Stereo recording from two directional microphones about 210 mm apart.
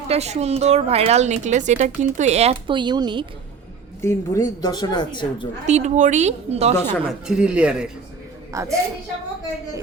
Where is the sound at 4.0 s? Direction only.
15° left (ahead or behind).